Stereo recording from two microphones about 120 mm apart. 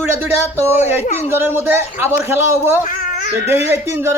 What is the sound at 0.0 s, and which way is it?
Speech, 20° right (ahead or behind).